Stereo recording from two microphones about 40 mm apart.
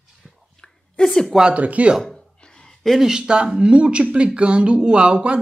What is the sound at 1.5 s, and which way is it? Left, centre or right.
Speech, right.